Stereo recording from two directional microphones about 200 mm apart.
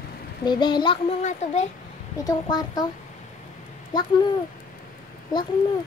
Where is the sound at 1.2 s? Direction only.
35° left (ahead or behind).